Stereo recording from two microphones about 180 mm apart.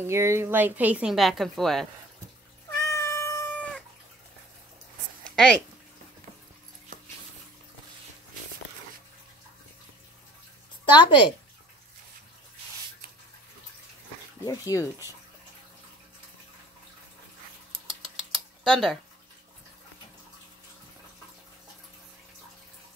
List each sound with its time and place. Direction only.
0.0 s speech: 15° right (ahead or behind); by 1.9 s centre (ahead or behind)
2.8 s cat: 15° left (ahead or behind)
5.3 s speech: 5° left (ahead or behind)
10.9 s a woman's voice: 25° left (ahead or behind)
14.4 s speech: 20° left (ahead or behind)
17.7 s a sound: 30° right (ahead or behind)
18.6 s speech: centre (ahead or behind)